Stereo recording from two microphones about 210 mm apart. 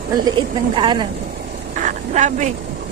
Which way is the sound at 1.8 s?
35° right (ahead or behind).